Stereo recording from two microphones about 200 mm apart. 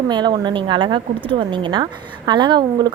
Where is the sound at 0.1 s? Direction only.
20° right (ahead or behind).